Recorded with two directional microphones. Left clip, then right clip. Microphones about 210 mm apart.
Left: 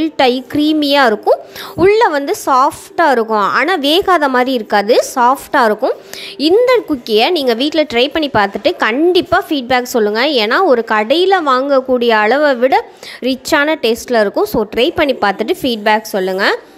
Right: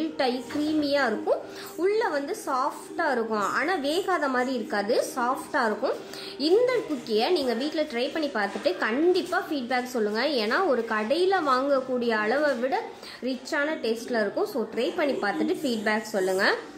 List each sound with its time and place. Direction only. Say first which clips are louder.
0.0 s speech: left 15 dB; 45° left (ahead or behind)